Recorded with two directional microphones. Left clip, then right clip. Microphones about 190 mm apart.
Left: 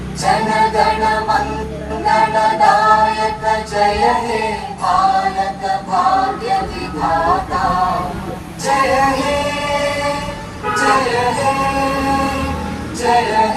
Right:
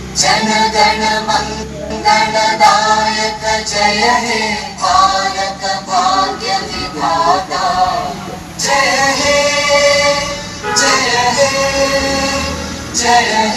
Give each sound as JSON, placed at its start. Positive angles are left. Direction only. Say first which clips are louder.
{"t": 0.2, "sound": "music", "louder": "right 2 dB", "side_deg": -20}
{"t": 8.6, "sound": "music", "louder": "right 2 dB", "side_deg": -20}
{"t": 13.0, "sound": "music", "louder": "right 2 dB", "side_deg": -20}